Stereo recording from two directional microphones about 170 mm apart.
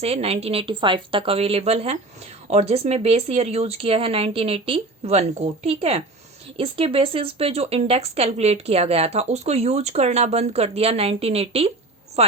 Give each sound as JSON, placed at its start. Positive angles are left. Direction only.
{"t": 0.0, "sound": "speech", "side_deg": -35}